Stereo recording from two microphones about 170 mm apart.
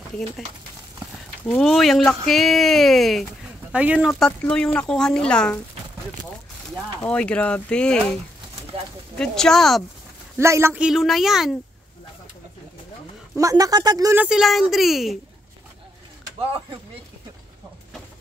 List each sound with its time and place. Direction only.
1.4 s speech: 5° left (ahead or behind)
4.1 s speech: 5° left (ahead or behind)
7.0 s speech: 5° left (ahead or behind)
9.2 s speech: 5° left (ahead or behind)
10.4 s speech: 15° right (ahead or behind)
13.4 s speech: 20° right (ahead or behind)
14.1 s speech: 5° right (ahead or behind)